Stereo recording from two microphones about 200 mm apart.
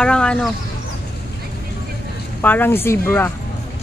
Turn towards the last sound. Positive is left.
turn(degrees=10)  # may be behind; listen again after turning